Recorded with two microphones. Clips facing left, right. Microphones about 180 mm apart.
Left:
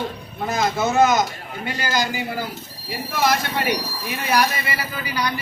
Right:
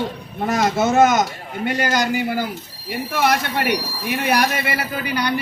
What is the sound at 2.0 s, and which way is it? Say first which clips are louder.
Speech: right 5 dB; 60° right (ahead or behind).